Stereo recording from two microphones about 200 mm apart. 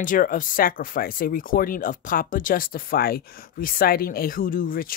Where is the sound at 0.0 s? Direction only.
45° left (ahead or behind).